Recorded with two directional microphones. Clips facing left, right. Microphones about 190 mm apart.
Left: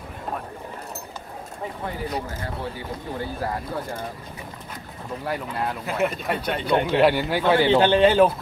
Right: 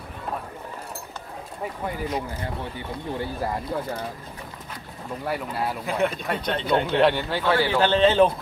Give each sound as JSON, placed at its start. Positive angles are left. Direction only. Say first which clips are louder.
{"t": 2.0, "sound": "speech", "louder": "even", "side_deg": 35}
{"t": 5.3, "sound": "speech", "louder": "even", "side_deg": -5}